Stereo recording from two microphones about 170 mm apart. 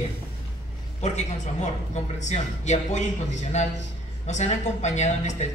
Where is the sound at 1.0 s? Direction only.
45° left (ahead or behind).